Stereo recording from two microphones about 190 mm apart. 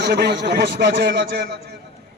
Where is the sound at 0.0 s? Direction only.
60° right (ahead or behind).